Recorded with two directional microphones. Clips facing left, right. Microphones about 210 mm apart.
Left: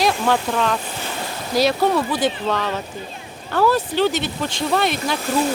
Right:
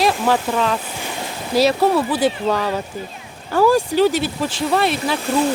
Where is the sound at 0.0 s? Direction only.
5° right (ahead or behind).